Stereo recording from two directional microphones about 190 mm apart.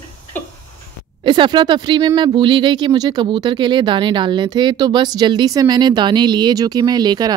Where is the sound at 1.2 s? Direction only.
25° right (ahead or behind).